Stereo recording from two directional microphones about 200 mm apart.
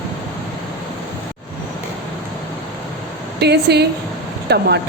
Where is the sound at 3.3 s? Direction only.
55° right (ahead or behind).